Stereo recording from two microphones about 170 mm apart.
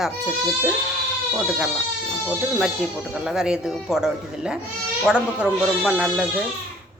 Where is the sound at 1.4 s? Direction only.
5° right (ahead or behind).